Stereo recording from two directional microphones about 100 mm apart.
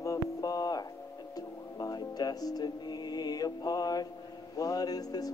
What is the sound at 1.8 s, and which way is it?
Music, 40° left (ahead or behind).